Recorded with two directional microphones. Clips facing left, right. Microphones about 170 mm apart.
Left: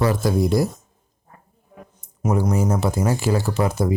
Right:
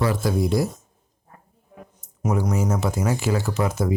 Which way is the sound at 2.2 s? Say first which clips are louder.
Left 3 dB; 30° left (ahead or behind).